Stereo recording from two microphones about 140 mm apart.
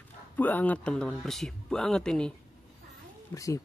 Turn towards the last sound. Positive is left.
turn(degrees=25)  # may be behind; listen again after turning